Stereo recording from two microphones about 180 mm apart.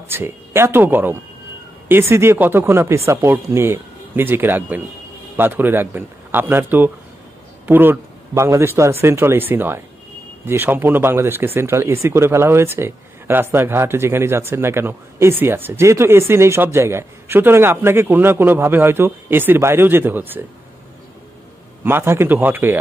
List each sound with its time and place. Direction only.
0.1 s a man's voice: 15° right (ahead or behind)
21.8 s speech: 15° right (ahead or behind)